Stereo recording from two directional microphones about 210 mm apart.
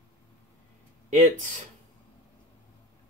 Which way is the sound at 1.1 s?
40° right (ahead or behind).